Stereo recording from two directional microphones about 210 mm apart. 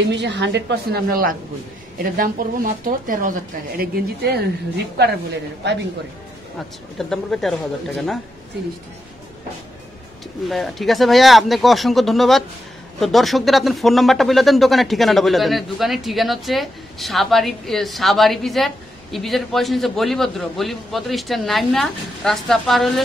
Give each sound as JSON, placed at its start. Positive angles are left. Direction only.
{"t": 0.1, "sound": "speech", "side_deg": -55}
{"t": 5.6, "sound": "speech", "side_deg": -55}
{"t": 7.0, "sound": "speech", "side_deg": 0}
{"t": 10.5, "sound": "speech", "side_deg": 0}